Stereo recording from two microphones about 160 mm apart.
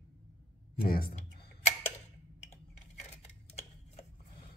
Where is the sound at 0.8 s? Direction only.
65° left (ahead or behind).